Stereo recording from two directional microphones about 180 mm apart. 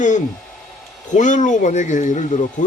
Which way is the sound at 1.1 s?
45° left (ahead or behind).